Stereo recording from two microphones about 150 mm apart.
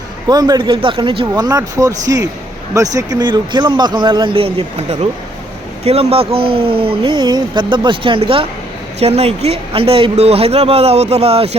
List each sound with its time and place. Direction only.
0.3 s speech: 25° right (ahead or behind)
1.3 s speech: 25° right (ahead or behind); by 11.5 s 40° right (ahead or behind)